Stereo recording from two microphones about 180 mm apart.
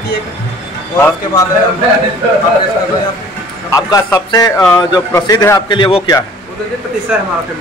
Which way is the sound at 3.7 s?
20° left (ahead or behind).